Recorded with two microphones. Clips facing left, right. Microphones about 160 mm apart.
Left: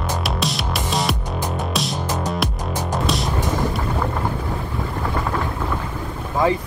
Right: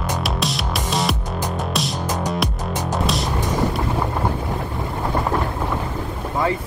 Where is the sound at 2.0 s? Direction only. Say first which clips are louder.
Even; 10° right (ahead or behind).